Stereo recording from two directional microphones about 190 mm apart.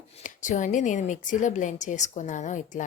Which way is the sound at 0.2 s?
40° left (ahead or behind).